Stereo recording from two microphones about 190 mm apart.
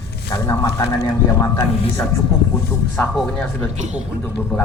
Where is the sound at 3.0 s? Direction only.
5° left (ahead or behind).